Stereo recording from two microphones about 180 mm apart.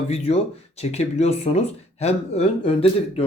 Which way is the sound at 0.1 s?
35° left (ahead or behind).